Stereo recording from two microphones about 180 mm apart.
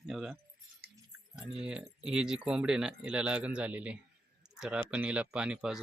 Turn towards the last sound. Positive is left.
turn(degrees=-5)  # may be behind; listen again after turning